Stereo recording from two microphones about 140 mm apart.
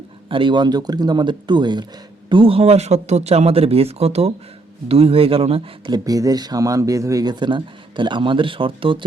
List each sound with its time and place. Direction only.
0.3 s speech: 35° right (ahead or behind)
6.1 s speech: 25° right (ahead or behind)